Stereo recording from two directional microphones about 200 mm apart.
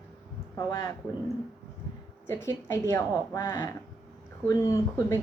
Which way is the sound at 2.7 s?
15° left (ahead or behind).